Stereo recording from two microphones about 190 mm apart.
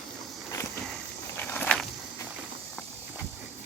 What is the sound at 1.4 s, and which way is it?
Walk, 10° left (ahead or behind).